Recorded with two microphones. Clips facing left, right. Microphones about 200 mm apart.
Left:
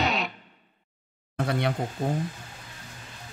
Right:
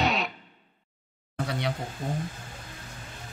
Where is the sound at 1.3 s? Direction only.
55° left (ahead or behind).